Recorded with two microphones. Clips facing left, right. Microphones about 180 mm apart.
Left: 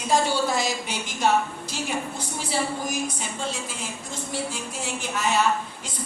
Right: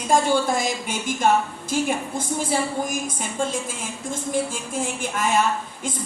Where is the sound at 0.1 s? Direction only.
50° right (ahead or behind).